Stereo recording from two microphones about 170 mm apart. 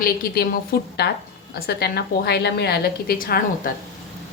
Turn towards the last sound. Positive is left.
turn(degrees=55)  # may be behind; listen again after turning